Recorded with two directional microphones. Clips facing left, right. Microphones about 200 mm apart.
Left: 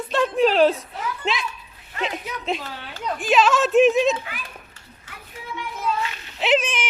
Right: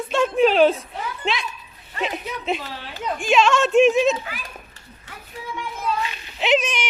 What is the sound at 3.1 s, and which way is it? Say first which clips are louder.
Speech: right 1 dB; 5° left (ahead or behind).